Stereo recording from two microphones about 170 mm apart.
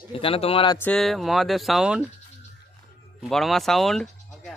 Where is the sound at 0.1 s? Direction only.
35° left (ahead or behind).